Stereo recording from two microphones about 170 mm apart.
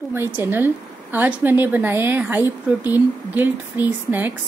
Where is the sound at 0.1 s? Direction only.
15° right (ahead or behind).